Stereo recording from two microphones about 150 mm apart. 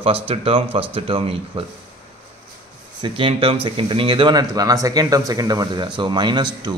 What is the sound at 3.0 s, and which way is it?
Speech, 35° right (ahead or behind).